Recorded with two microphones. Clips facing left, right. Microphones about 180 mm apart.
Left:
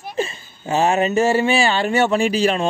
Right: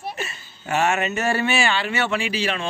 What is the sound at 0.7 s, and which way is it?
Speech, 30° left (ahead or behind).